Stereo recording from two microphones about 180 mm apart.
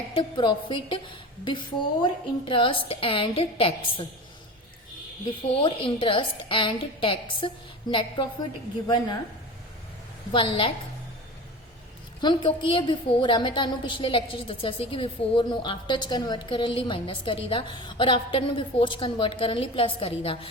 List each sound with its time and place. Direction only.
0.1 s a woman's voice: 25° left (ahead or behind)
5.6 s a woman's voice: 30° left (ahead or behind)
10.3 s a woman's voice: 30° left (ahead or behind)
12.2 s a woman's voice: 25° left (ahead or behind)